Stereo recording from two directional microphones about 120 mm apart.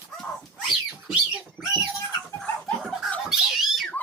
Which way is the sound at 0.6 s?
5° right (ahead or behind).